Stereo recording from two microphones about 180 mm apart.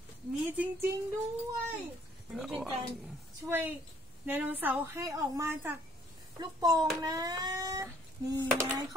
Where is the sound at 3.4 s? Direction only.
10° right (ahead or behind).